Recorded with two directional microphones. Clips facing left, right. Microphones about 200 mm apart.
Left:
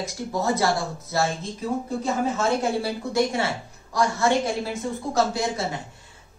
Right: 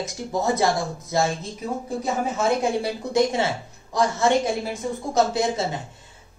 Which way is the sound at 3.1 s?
20° right (ahead or behind).